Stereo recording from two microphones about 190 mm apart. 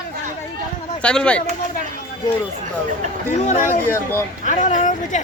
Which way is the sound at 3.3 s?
35° left (ahead or behind).